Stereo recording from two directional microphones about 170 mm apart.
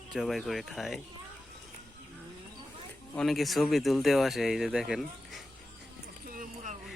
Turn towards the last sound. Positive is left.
turn(degrees=-50)  # may be behind; listen again after turning